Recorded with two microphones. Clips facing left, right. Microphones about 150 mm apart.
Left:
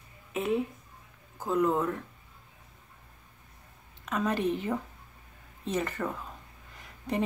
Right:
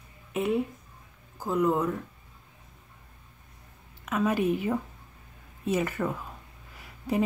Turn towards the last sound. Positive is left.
turn(degrees=-5)  # may be behind; listen again after turning